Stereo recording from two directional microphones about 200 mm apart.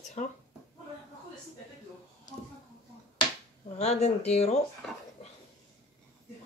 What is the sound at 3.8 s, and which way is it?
Speech, 35° left (ahead or behind).